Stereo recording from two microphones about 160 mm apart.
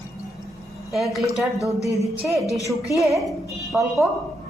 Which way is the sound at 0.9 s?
Centre (ahead or behind).